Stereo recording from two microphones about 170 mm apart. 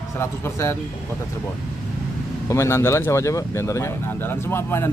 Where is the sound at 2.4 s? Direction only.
15° left (ahead or behind).